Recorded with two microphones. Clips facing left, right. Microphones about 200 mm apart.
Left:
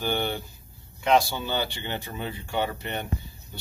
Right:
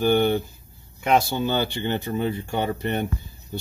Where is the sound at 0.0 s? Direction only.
50° right (ahead or behind).